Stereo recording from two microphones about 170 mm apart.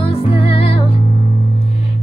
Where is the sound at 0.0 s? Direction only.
35° left (ahead or behind).